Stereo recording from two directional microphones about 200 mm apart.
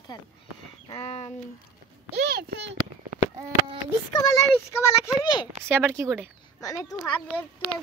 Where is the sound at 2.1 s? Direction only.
55° right (ahead or behind).